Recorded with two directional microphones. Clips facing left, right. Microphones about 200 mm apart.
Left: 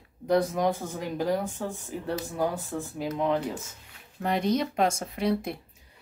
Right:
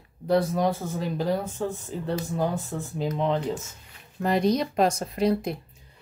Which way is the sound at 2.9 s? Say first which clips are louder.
Right 5 dB; 20° right (ahead or behind).